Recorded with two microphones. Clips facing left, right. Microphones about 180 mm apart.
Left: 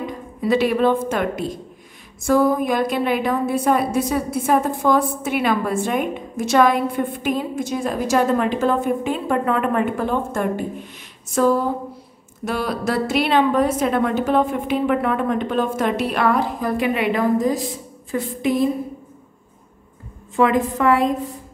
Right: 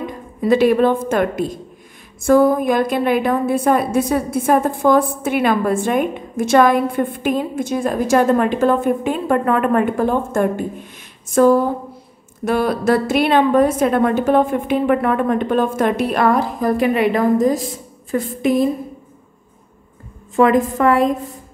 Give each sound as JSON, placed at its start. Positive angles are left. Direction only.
{"t": 0.4, "sound": "a woman's voice", "side_deg": -50}
{"t": 2.2, "sound": "a woman's voice", "side_deg": -50}
{"t": 20.3, "sound": "a woman's voice", "side_deg": -45}